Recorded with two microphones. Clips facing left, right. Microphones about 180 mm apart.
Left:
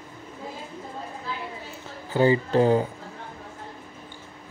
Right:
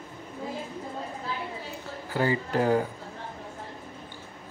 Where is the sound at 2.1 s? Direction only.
25° left (ahead or behind).